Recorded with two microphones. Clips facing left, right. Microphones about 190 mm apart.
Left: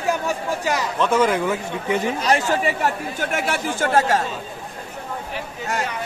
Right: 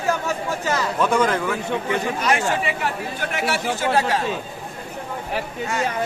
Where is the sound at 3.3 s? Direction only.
50° left (ahead or behind).